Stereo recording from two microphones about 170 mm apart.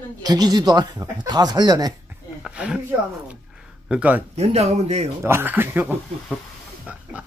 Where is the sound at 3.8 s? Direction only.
5° right (ahead or behind).